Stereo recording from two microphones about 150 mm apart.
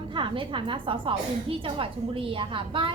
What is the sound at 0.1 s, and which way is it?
A woman's voice, 35° right (ahead or behind).